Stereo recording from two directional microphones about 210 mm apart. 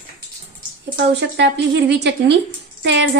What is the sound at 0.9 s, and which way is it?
A woman's voice, 55° right (ahead or behind).